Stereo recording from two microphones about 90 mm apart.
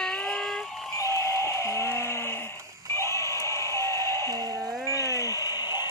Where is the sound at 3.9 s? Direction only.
50° right (ahead or behind).